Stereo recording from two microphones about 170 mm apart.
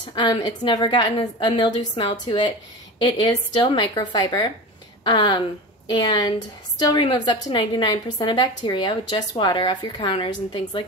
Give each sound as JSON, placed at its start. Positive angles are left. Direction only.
{"t": 0.1, "sound": "a woman's voice", "side_deg": 25}